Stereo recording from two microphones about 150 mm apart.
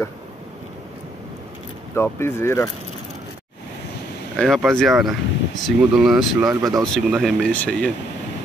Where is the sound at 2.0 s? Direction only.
15° left (ahead or behind).